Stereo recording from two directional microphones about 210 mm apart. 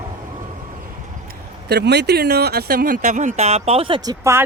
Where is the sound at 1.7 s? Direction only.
55° right (ahead or behind).